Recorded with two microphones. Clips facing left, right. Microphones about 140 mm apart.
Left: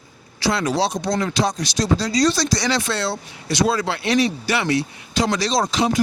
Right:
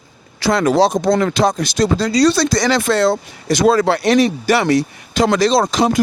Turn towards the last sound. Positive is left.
turn(degrees=-60)  # may be behind; listen again after turning